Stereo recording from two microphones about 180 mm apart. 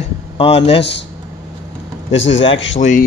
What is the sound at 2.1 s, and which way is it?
Speech, 90° left.